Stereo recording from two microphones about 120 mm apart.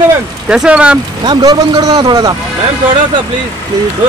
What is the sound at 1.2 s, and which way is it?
Speech, 35° right (ahead or behind).